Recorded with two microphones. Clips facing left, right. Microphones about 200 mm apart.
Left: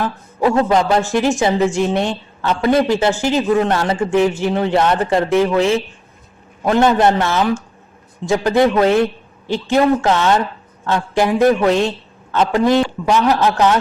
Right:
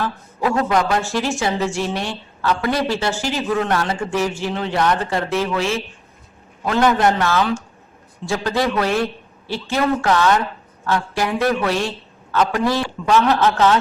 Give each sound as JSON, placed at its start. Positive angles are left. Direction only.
{"t": 0.0, "sound": "a man's voice", "side_deg": 20}